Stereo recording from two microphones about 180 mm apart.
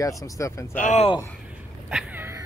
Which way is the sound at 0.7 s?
40° left (ahead or behind).